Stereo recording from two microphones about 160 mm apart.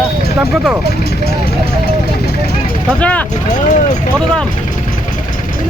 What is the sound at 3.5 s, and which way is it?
Speech, 50° left (ahead or behind).